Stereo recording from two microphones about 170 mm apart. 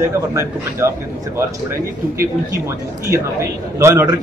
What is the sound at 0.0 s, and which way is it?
Speech, 15° right (ahead or behind).